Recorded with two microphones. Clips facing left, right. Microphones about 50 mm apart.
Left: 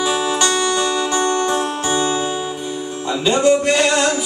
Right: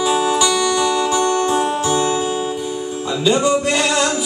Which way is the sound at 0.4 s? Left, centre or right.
Left.